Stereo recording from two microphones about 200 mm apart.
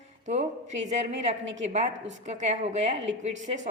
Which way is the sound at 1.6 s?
35° right (ahead or behind).